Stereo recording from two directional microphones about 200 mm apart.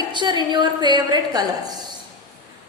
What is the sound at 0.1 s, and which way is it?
A woman's voice, 20° right (ahead or behind).